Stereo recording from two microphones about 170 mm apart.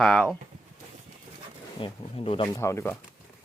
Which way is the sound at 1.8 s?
30° left (ahead or behind).